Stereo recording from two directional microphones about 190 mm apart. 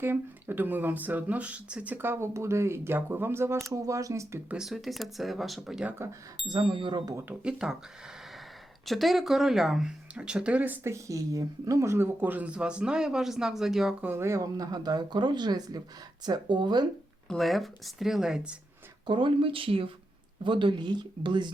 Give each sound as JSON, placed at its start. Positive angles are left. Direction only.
{"t": 0.0, "sound": "speech", "side_deg": -10}
{"t": 4.5, "sound": "speech", "side_deg": 0}
{"t": 6.5, "sound": "speech", "side_deg": -25}
{"t": 8.9, "sound": "speech", "side_deg": 0}
{"t": 17.2, "sound": "speech", "side_deg": 0}
{"t": 19.0, "sound": "speech", "side_deg": -25}